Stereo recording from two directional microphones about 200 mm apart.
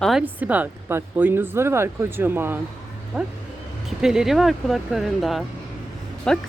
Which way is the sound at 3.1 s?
Centre (ahead or behind).